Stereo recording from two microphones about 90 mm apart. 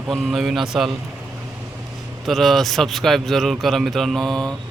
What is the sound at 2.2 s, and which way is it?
Speech, centre (ahead or behind).